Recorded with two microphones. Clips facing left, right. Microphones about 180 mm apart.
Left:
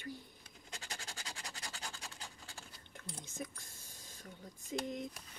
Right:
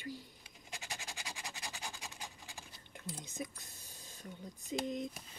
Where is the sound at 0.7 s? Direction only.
15° right (ahead or behind).